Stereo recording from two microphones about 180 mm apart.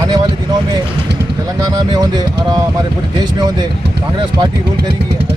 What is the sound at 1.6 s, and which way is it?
Speech, 20° right (ahead or behind).